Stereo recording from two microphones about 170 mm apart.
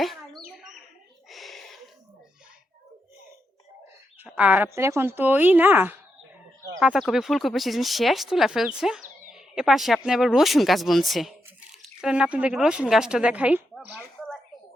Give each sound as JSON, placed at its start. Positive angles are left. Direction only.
{"t": 0.0, "sound": "bird", "side_deg": 0}
{"t": 1.3, "sound": "a sound", "side_deg": 0}
{"t": 4.2, "sound": "a woman's voice", "side_deg": -10}
{"t": 6.7, "sound": "speech", "side_deg": 0}